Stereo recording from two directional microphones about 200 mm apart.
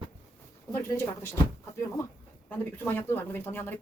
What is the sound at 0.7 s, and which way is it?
Speech, 15° left (ahead or behind).